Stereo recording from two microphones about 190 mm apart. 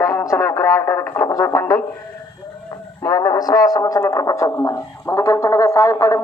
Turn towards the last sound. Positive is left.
turn(degrees=15)  # may be behind; listen again after turning